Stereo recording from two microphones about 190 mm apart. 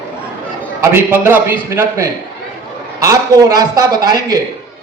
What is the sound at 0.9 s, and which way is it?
A man's voice, 10° right (ahead or behind).